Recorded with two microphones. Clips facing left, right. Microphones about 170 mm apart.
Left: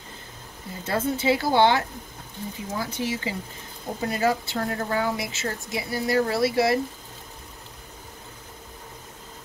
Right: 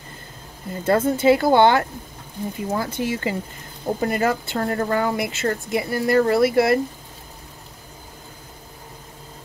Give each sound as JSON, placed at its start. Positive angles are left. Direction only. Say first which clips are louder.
{"t": 0.8, "sound": "speech", "louder": "right 7 dB", "side_deg": -50}